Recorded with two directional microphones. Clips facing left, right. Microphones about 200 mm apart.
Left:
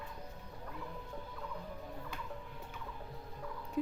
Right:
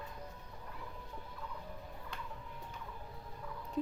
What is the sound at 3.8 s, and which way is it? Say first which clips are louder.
Music: left 1 dB; 5° left (ahead or behind).